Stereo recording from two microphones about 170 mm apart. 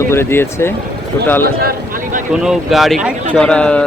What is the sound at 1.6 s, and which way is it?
Speech, 55° right (ahead or behind).